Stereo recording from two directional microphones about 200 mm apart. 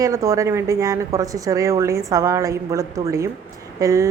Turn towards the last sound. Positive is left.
turn(degrees=-15)  # may be behind; listen again after turning